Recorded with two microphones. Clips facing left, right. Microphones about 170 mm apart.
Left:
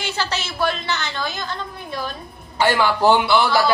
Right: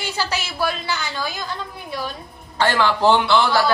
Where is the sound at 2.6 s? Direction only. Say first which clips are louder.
Left 1 dB; 10° left (ahead or behind).